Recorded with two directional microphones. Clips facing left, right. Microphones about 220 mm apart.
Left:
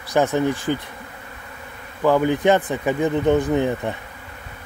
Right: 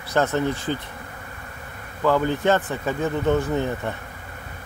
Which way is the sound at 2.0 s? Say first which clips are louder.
Left 3 dB; 15° left (ahead or behind).